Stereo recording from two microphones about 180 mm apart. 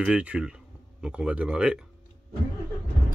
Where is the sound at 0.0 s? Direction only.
5° right (ahead or behind).